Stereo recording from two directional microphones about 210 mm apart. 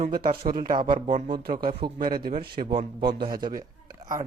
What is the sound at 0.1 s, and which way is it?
Speech, 40° right (ahead or behind).